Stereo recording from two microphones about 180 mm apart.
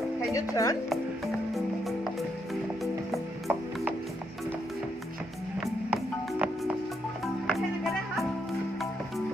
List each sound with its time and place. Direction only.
0.3 s speech: 20° left (ahead or behind)
0.8 s music: centre (ahead or behind)
5.6 s music: 5° right (ahead or behind)